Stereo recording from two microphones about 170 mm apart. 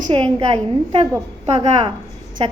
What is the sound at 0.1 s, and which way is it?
Speech, 30° right (ahead or behind).